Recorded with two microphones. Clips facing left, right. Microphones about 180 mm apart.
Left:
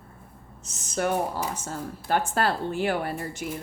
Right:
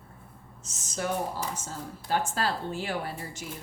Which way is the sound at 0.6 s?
60° left (ahead or behind).